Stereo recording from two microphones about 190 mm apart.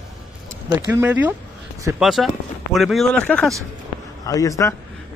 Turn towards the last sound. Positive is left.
turn(degrees=15)  # may be behind; listen again after turning